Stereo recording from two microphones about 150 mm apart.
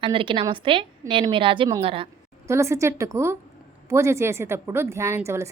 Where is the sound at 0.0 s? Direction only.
35° right (ahead or behind).